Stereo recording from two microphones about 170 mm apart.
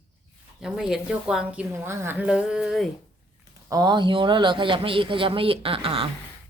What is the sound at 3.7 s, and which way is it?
A man's voice, 25° right (ahead or behind).